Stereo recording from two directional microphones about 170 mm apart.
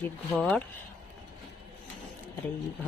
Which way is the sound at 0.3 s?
Centre (ahead or behind).